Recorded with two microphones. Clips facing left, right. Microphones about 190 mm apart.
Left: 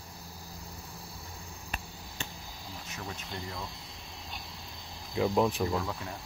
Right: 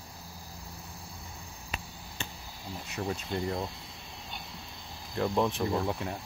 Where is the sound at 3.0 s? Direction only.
30° right (ahead or behind).